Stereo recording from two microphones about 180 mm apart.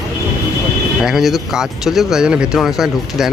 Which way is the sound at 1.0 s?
Centre (ahead or behind).